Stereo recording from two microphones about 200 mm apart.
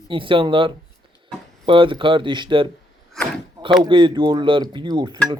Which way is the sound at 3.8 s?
20° right (ahead or behind).